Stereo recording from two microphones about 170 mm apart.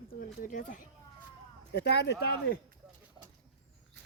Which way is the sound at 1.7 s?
80° left.